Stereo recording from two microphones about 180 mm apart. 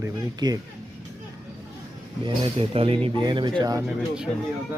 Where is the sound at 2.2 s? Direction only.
30° right (ahead or behind).